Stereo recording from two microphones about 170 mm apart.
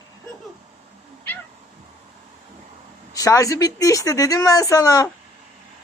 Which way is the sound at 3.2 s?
20° left (ahead or behind).